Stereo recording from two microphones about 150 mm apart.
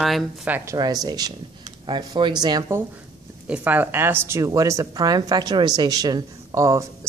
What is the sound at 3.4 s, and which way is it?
Speech, 10° right (ahead or behind).